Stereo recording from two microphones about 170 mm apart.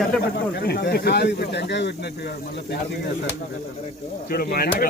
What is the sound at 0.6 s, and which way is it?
Speech, 75° left (ahead or behind).